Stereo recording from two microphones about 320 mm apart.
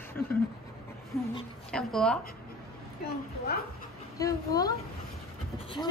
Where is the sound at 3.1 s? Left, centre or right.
Left.